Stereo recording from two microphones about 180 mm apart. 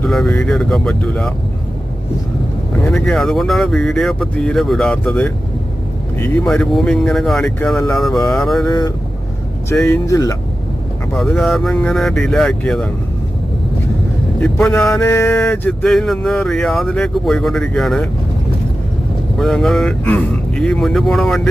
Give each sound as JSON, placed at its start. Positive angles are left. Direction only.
{"t": 0.0, "sound": "speech", "side_deg": 5}
{"t": 2.9, "sound": "speech", "side_deg": 0}
{"t": 6.4, "sound": "speech", "side_deg": 5}
{"t": 8.6, "sound": "speech", "side_deg": 20}
{"t": 9.9, "sound": "speech", "side_deg": 20}
{"t": 11.2, "sound": "speech", "side_deg": 5}
{"t": 14.7, "sound": "mantra", "side_deg": 15}
{"t": 14.9, "sound": "speech", "side_deg": 10}
{"t": 19.4, "sound": "speech", "side_deg": 0}